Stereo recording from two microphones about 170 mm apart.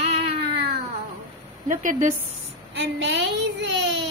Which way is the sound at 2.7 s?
90° right.